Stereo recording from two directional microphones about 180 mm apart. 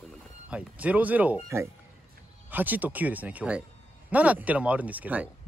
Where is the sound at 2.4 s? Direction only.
10° right (ahead or behind).